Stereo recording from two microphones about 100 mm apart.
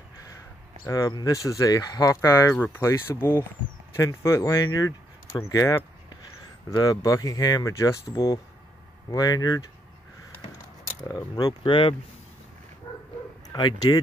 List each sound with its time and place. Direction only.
0.8 s speech: 40° left (ahead or behind)
2.5 s speech: 20° left (ahead or behind); by 9.7 s 40° left (ahead or behind)
11.1 s speech: 40° left (ahead or behind)
11.6 s speech: 60° left (ahead or behind)
12.9 s bow-wow: 45° left (ahead or behind)
13.5 s speech: 50° left (ahead or behind)